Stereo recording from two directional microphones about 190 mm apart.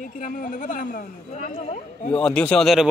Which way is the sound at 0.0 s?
45° left (ahead or behind).